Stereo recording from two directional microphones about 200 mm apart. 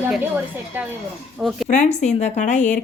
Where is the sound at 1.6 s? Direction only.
35° left (ahead or behind).